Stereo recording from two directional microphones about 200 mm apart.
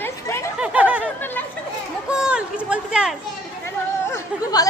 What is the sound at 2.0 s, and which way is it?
A child's voice, 5° right (ahead or behind).